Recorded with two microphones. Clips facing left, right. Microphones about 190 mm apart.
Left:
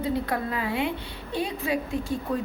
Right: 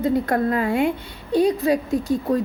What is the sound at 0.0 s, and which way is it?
A woman's voice, 45° right (ahead or behind).